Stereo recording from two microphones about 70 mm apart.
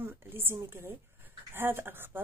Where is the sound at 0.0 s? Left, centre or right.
Right.